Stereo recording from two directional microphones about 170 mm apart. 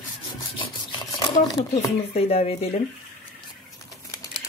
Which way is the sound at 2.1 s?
35° left (ahead or behind).